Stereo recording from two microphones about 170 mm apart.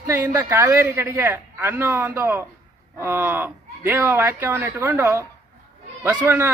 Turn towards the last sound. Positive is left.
turn(degrees=-10)  # may be behind; listen again after turning